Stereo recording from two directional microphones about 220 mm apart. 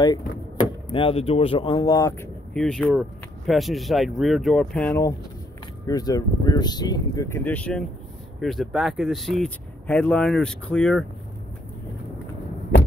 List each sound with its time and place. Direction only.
0.8 s speech: 25° left (ahead or behind); by 11.1 s centre (ahead or behind)